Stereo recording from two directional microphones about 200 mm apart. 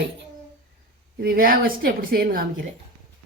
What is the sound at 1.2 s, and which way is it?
Speech, 45° right (ahead or behind).